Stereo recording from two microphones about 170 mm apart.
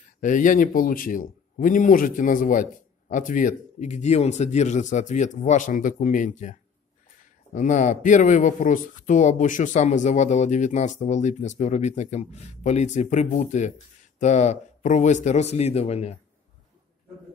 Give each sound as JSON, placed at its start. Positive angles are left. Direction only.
{"t": 0.2, "sound": "speech", "side_deg": 50}
{"t": 7.5, "sound": "a man's voice", "side_deg": 45}